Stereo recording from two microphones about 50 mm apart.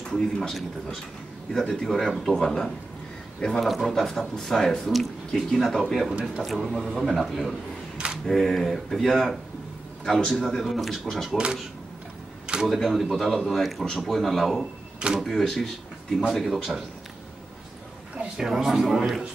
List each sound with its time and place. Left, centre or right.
0.1 s a man's voice: centre
3.6 s speech: centre
12.6 s speech: centre
18.4 s a man's voice: centre